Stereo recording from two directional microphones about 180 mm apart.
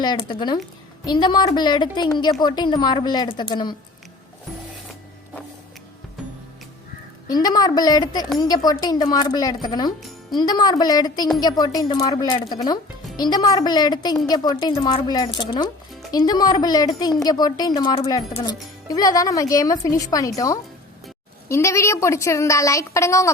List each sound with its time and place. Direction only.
0.0 s speech: 25° left (ahead or behind)
7.3 s a woman's voice: 20° left (ahead or behind)